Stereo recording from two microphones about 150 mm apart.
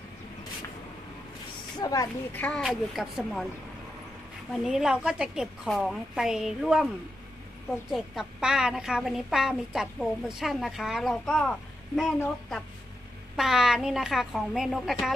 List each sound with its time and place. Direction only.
1.8 s speech: 25° left (ahead or behind)
2.3 s a woman's voice: 10° left (ahead or behind)
4.6 s a woman's voice: 5° right (ahead or behind)
7.9 s a woman's voice: centre (ahead or behind)
13.4 s a woman's voice: centre (ahead or behind)